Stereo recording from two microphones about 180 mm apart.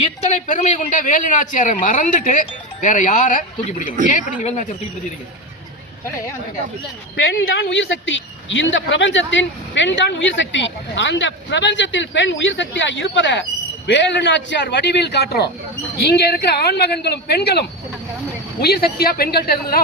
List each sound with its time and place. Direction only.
0.2 s speech: 40° left (ahead or behind)
7.2 s speech: 70° left (ahead or behind); by 13.4 s 90° left
13.8 s speech: 75° left (ahead or behind); by 19.8 s 55° left (ahead or behind)